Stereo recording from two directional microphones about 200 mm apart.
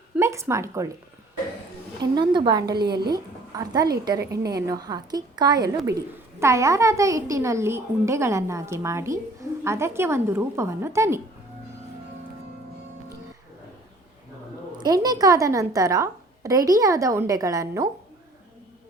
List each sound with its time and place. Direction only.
0.2 s speech: 15° right (ahead or behind)
2.0 s a woman's voice: 20° right (ahead or behind)
14.8 s a woman's voice: 20° right (ahead or behind)